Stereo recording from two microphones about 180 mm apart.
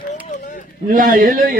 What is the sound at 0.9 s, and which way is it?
Speech, 50° right (ahead or behind).